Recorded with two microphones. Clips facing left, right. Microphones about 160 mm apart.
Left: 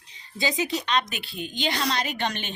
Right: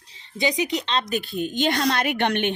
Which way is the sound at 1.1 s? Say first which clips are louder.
Right 9 dB; 45° right (ahead or behind).